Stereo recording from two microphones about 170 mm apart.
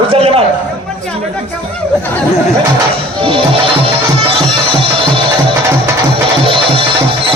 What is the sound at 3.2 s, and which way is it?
Music, 30° right (ahead or behind).